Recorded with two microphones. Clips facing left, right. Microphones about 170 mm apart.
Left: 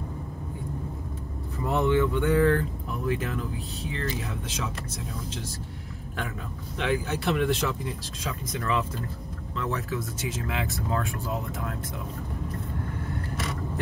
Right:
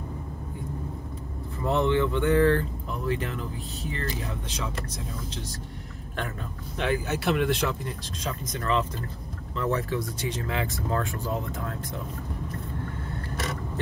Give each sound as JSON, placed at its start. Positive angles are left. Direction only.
{"t": 1.7, "sound": "speech", "side_deg": 10}
{"t": 3.8, "sound": "speech", "side_deg": -40}
{"t": 6.8, "sound": "speech", "side_deg": 0}
{"t": 8.5, "sound": "speech", "side_deg": 10}
{"t": 10.3, "sound": "speech", "side_deg": 5}